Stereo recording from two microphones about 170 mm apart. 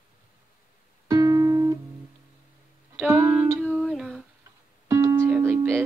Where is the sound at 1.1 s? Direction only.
20° right (ahead or behind).